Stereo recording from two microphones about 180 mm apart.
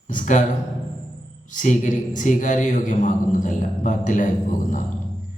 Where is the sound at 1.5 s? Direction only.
45° left (ahead or behind).